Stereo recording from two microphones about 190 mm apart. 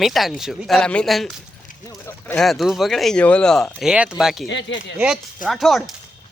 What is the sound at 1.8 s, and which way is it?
Speech, 10° left (ahead or behind).